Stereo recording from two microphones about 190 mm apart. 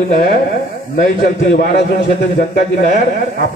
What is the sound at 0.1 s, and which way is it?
A man's voice, 50° left (ahead or behind).